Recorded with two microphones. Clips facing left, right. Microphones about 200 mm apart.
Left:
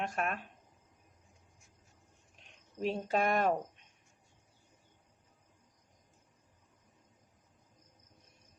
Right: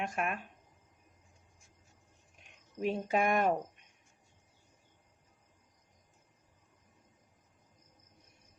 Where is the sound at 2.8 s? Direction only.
10° right (ahead or behind).